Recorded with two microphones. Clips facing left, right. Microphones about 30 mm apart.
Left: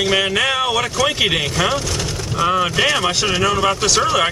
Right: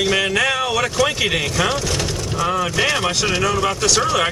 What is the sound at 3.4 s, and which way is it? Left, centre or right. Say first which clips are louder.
Speech: left 4 dB; centre.